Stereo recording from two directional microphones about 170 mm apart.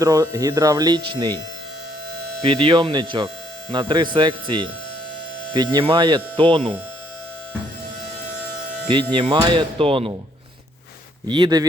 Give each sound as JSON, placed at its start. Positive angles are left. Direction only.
{"t": 0.0, "sound": "speech", "side_deg": -20}
{"t": 2.4, "sound": "speech", "side_deg": -30}
{"t": 9.4, "sound": "speech", "side_deg": -30}
{"t": 11.3, "sound": "speech", "side_deg": -25}